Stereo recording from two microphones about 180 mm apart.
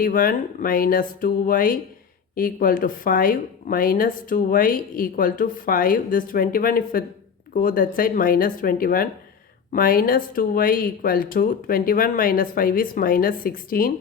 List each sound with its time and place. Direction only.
0.0 s speech: 50° left (ahead or behind)